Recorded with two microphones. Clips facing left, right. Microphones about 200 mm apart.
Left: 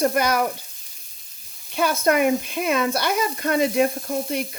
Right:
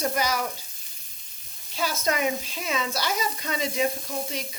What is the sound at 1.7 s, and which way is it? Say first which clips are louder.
Speech: left 7 dB; 60° left (ahead or behind).